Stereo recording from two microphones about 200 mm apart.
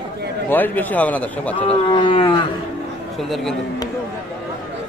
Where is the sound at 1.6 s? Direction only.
25° left (ahead or behind).